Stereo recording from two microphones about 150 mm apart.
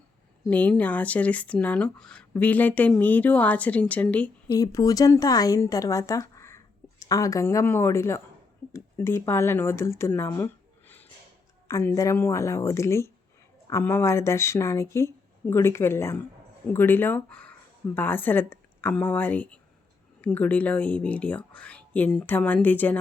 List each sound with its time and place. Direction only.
0.4 s speech: 10° left (ahead or behind)
4.5 s speech: 25° left (ahead or behind)